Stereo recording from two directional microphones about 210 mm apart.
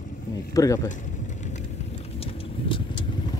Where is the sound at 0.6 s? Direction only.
15° left (ahead or behind).